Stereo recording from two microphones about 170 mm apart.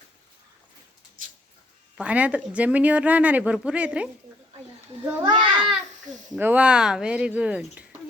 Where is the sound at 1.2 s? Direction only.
50° right (ahead or behind).